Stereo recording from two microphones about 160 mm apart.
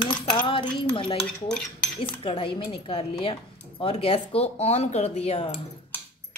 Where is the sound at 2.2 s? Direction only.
30° left (ahead or behind).